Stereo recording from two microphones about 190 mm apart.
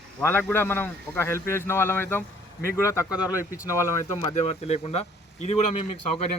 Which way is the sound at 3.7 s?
15° left (ahead or behind).